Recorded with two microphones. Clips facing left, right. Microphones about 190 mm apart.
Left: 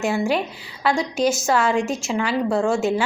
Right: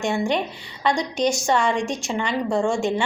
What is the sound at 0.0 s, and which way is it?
A woman's voice, 5° left (ahead or behind).